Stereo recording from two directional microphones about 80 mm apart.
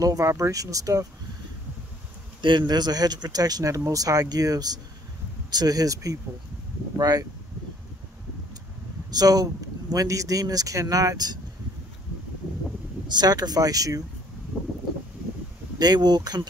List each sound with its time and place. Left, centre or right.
0.0 s speech: right
2.4 s speech: right
9.1 s speech: right
13.1 s speech: right
15.8 s speech: right